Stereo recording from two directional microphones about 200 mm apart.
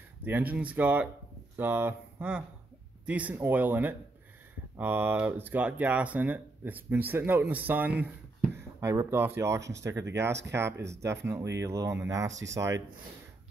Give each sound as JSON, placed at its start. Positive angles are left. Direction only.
{"t": 0.2, "sound": "speech", "side_deg": -10}